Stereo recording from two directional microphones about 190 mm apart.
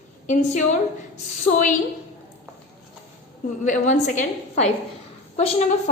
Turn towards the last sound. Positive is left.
turn(degrees=35)  # may be behind; listen again after turning